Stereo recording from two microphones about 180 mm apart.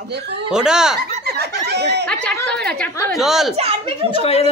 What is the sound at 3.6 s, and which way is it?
Speech, 30° right (ahead or behind).